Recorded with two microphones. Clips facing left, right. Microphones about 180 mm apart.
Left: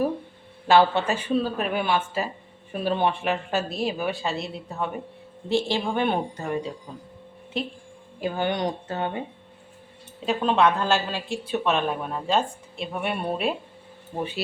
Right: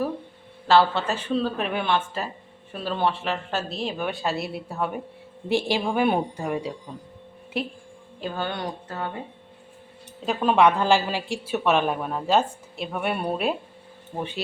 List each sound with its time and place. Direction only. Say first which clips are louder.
0.7 s a woman's voice: left 1 dB; 15° left (ahead or behind); by 7.0 s centre (ahead or behind)
8.2 s speech: left 4 dB; 15° left (ahead or behind)
10.2 s a woman's voice: right 2 dB; 5° right (ahead or behind)